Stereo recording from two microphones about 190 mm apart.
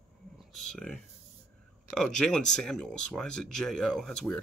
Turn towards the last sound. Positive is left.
turn(degrees=0)  # may be behind; listen again after turning